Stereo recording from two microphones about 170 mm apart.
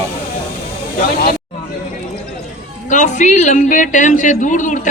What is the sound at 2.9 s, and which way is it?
A man's voice, 45° left (ahead or behind).